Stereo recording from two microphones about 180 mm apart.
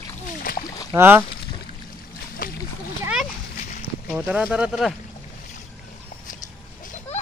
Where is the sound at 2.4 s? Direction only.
50° left (ahead or behind).